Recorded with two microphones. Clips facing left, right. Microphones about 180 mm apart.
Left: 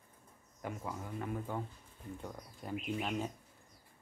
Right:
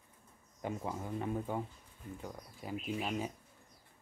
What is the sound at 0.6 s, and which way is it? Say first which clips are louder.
Speech: right 3 dB; 20° right (ahead or behind).